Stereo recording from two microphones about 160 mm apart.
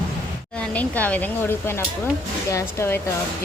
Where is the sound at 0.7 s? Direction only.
10° left (ahead or behind).